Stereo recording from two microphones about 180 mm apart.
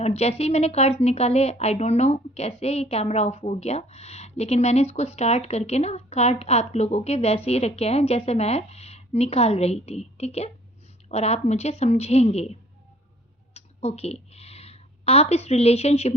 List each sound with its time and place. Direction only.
0.0 s a woman's voice: 35° left (ahead or behind)